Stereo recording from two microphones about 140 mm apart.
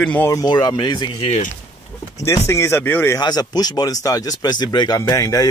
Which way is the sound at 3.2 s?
30° left (ahead or behind).